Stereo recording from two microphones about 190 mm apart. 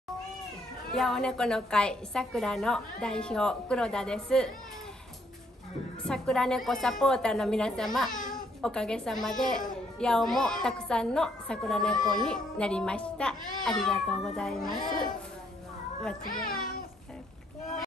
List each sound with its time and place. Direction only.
0.9 s a woman's voice: 5° left (ahead or behind)
6.0 s a woman's voice: 5° left (ahead or behind)
8.2 s babbling: 45° left (ahead or behind)
8.5 s a woman's voice: 5° left (ahead or behind)
16.3 s a child's voice: 50° left (ahead or behind)